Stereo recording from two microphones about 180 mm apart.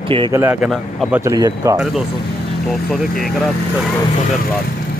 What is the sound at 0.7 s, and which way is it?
Speech, centre (ahead or behind).